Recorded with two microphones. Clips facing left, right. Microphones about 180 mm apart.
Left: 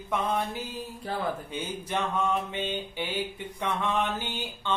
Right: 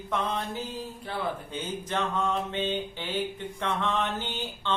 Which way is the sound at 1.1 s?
40° left (ahead or behind).